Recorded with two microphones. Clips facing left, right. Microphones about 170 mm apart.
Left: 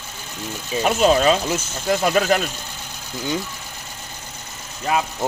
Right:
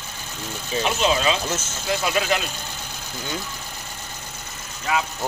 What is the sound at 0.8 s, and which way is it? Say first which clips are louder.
Speech: left 6 dB; 45° left (ahead or behind).